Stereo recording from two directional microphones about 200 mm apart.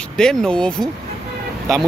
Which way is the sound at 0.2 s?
5° left (ahead or behind).